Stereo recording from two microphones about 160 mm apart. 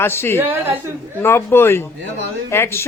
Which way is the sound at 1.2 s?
15° left (ahead or behind).